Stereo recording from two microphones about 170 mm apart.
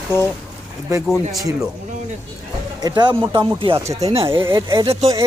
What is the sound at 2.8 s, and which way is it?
Speech, 25° right (ahead or behind).